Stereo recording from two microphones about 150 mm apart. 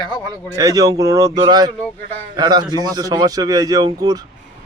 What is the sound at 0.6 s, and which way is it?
A man's voice, 25° right (ahead or behind).